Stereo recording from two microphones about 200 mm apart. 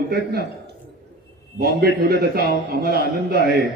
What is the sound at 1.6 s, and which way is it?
A man's voice, 50° right (ahead or behind).